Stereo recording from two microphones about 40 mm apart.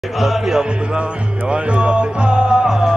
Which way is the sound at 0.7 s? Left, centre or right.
Right.